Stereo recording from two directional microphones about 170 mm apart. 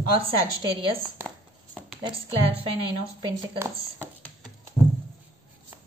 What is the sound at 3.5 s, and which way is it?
Speech, 15° right (ahead or behind).